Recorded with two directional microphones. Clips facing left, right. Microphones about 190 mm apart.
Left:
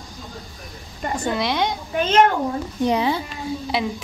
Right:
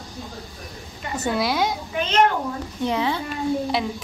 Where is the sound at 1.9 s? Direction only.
45° left (ahead or behind).